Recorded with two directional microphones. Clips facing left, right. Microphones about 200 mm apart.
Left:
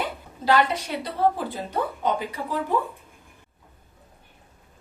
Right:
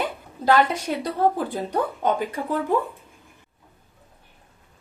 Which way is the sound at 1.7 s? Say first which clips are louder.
Right 2 dB; 50° right (ahead or behind).